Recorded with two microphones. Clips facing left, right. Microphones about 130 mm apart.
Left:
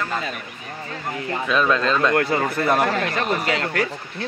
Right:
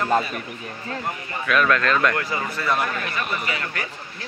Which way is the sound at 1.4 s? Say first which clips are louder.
Even; 25° left (ahead or behind).